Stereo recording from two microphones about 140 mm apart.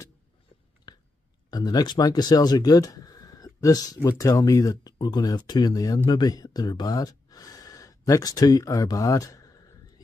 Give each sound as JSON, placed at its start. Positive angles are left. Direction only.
{"t": 0.9, "sound": "chewing", "side_deg": 30}
{"t": 1.5, "sound": "speech", "side_deg": 30}